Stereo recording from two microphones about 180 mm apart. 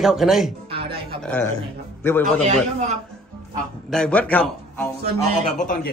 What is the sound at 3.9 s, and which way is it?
A man's voice, 5° left (ahead or behind).